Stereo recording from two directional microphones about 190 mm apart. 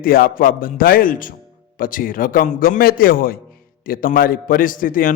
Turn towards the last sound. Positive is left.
turn(degrees=45)  # may be behind; listen again after turning